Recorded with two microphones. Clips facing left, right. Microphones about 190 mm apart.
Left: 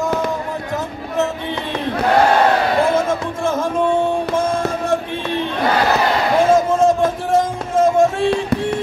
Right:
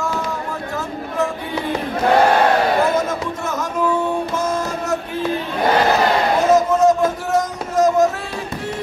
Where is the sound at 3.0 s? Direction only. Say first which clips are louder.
Left 4 dB; 30° left (ahead or behind).